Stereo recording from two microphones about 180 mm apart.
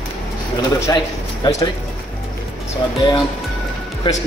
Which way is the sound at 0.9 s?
20° left (ahead or behind).